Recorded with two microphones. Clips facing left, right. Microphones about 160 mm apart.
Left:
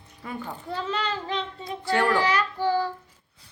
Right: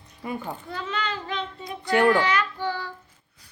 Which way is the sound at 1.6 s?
20° right (ahead or behind).